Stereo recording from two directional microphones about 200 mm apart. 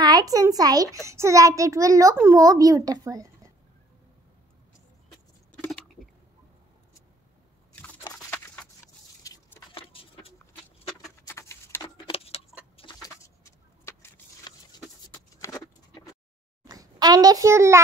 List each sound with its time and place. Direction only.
0.0 s a child's voice: 20° right (ahead or behind)
5.5 s patter: 5° left (ahead or behind)
9.2 s vehicle: 20° left (ahead or behind)
11.1 s a sound: 15° left (ahead or behind)
12.1 s keys jangling: 30° left (ahead or behind)
12.7 s vehicle: 20° left (ahead or behind)
16.6 s a child's voice: 20° right (ahead or behind)